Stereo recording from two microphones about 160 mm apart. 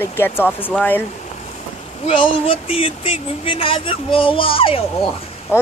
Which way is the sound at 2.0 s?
35° left (ahead or behind).